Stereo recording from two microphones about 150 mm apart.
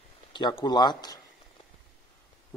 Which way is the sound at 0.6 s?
30° left (ahead or behind).